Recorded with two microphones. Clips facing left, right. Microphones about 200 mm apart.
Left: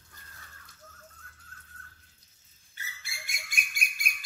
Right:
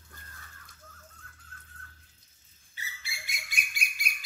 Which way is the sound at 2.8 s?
50° left (ahead or behind).